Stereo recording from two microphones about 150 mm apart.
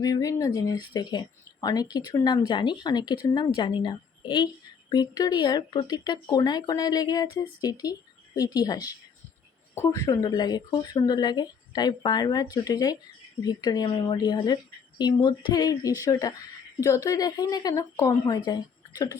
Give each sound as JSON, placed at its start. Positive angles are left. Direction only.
{"t": 0.0, "sound": "a woman's voice", "side_deg": 25}